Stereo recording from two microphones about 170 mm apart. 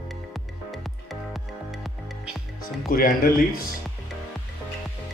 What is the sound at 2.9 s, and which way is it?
Speech, 60° left (ahead or behind).